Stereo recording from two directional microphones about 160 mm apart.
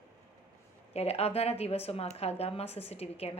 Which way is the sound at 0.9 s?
40° left (ahead or behind).